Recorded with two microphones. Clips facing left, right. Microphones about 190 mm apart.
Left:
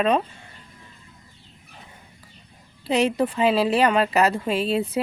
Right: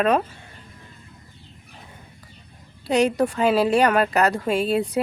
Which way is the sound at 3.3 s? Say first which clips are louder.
Right 1 dB; centre (ahead or behind).